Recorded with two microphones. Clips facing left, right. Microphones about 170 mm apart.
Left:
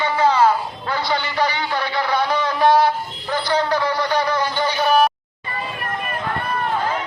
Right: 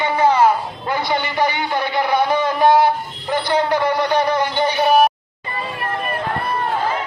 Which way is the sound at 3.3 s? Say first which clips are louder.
Right 2 dB; 20° right (ahead or behind).